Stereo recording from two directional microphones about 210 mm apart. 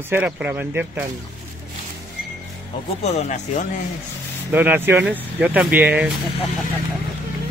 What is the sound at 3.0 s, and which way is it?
Speech, 30° left (ahead or behind).